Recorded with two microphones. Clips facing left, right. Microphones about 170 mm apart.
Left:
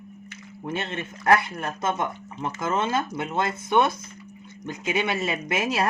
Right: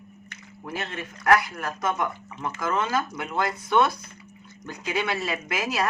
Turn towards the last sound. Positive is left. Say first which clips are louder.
# left 2 dB
turn(degrees=25)  # may be behind; listen again after turning